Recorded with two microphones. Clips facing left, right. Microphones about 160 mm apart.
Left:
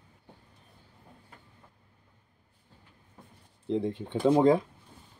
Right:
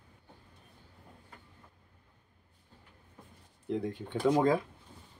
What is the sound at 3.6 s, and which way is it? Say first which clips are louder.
Speech: left 4 dB; 25° left (ahead or behind).